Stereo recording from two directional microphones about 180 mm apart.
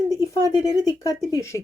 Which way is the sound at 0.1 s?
20° right (ahead or behind).